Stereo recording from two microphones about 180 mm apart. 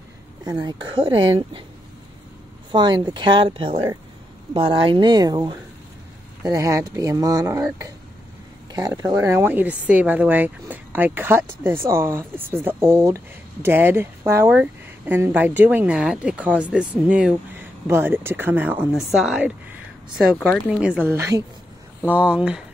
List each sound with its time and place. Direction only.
0.5 s speech: 20° right (ahead or behind)
2.7 s speech: 25° right (ahead or behind); by 22.6 s 5° right (ahead or behind)